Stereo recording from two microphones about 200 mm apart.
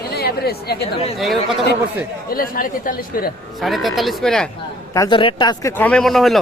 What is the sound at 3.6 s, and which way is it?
Speech, centre (ahead or behind).